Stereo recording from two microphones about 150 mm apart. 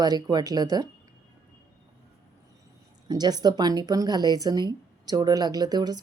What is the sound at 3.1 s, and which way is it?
Speech, 25° right (ahead or behind).